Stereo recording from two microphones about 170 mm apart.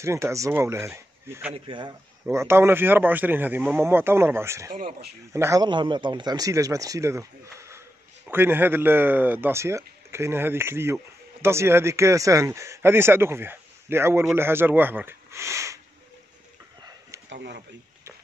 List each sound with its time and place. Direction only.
0.0 s speech: 15° right (ahead or behind)
1.5 s speech: 30° right (ahead or behind)
2.3 s speech: 15° right (ahead or behind)
17.3 s a sound: 85° right